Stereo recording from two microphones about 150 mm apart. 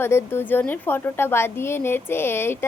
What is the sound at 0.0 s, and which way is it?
A woman's voice, 15° left (ahead or behind).